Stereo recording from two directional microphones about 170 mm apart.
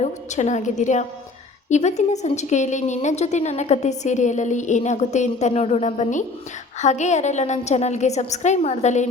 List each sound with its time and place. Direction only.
0.0 s speech: 45° left (ahead or behind)